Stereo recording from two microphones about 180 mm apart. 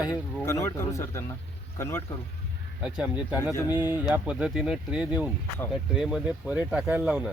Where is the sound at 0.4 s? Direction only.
15° left (ahead or behind).